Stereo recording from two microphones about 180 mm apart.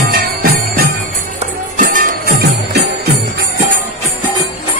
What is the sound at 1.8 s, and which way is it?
Music, 50° right (ahead or behind).